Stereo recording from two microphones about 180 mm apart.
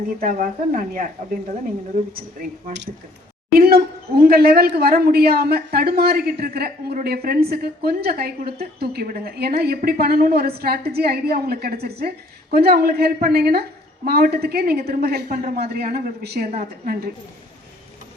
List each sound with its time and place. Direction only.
0.2 s speech: 50° right (ahead or behind)
2.1 s speech: 50° right (ahead or behind)